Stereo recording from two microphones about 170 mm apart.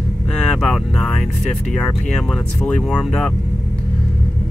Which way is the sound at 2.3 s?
5° left (ahead or behind).